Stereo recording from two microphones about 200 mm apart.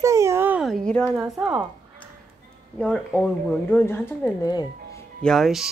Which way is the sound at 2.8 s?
5° left (ahead or behind).